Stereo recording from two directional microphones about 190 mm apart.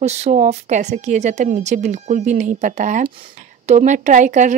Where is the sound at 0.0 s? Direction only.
35° right (ahead or behind).